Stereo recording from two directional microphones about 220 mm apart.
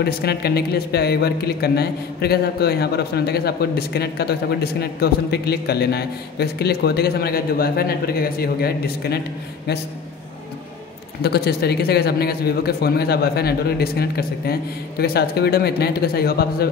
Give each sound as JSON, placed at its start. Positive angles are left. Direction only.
{"t": 0.0, "sound": "speech", "side_deg": 45}
{"t": 11.2, "sound": "speech", "side_deg": 45}